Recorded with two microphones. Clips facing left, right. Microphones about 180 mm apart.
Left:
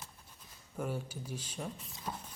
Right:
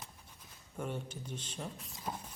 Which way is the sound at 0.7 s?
5° left (ahead or behind).